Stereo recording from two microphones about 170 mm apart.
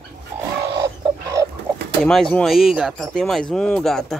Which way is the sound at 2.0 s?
Centre (ahead or behind).